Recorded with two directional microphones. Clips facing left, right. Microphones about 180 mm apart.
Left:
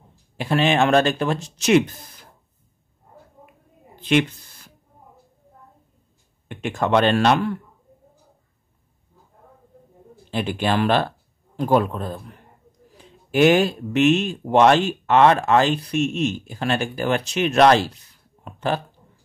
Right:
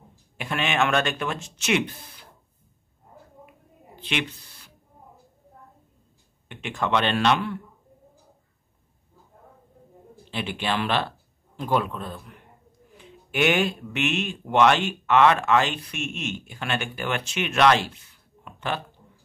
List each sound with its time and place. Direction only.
0.4 s speech: 35° left (ahead or behind)
4.0 s a sound: 45° left (ahead or behind)
6.5 s speech: 45° left (ahead or behind)
10.3 s speech: 40° left (ahead or behind)